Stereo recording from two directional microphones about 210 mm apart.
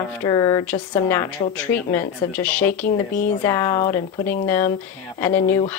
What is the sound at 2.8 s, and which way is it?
Speech, 40° left (ahead or behind).